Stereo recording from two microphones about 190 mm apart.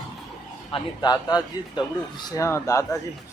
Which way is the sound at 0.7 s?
20° left (ahead or behind).